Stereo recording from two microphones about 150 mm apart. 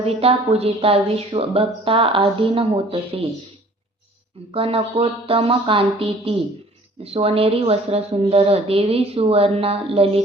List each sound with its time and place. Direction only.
0.0 s speech: 40° right (ahead or behind)
4.5 s speech: 40° right (ahead or behind)